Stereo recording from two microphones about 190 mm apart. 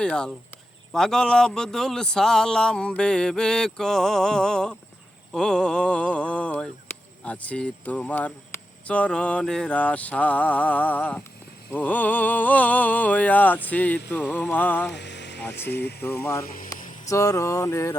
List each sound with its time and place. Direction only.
0.0 s a man's voice: 5° left (ahead or behind)
5.3 s a sound: centre (ahead or behind)
14.9 s speech: 65° left (ahead or behind)
16.6 s speech: 15° left (ahead or behind)